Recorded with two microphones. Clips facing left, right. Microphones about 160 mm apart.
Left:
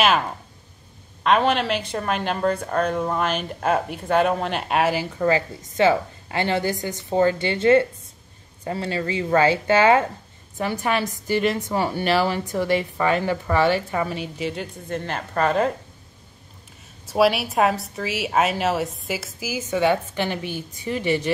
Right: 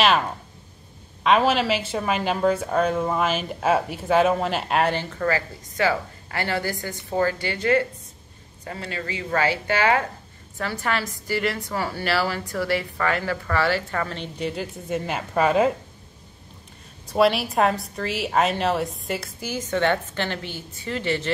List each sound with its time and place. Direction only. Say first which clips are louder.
1.2 s a woman's voice: even; centre (ahead or behind)
5.2 s a woman's voice: left 4 dB; 20° left (ahead or behind); by 15.7 s 5° right (ahead or behind)
17.0 s a woman's voice: left 1 dB; 5° left (ahead or behind)